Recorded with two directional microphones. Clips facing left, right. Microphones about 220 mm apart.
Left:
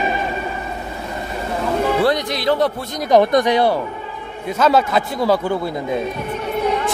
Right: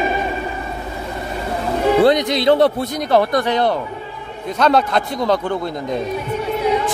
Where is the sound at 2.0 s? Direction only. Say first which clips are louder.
Right 4 dB; 20° right (ahead or behind).